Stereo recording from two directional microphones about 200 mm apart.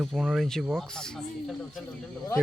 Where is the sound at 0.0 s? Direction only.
5° right (ahead or behind).